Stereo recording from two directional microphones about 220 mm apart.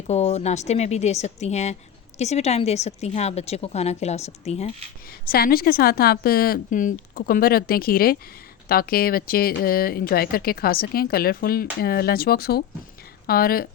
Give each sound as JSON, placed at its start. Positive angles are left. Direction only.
{"t": 0.1, "sound": "a woman's voice", "side_deg": 30}
{"t": 5.3, "sound": "speech", "side_deg": 45}